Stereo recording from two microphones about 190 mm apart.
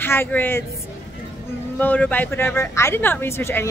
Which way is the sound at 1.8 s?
10° left (ahead or behind).